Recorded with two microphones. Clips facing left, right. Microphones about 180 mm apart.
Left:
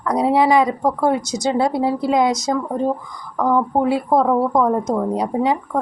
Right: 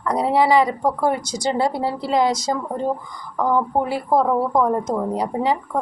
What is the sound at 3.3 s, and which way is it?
A woman's voice, 5° right (ahead or behind).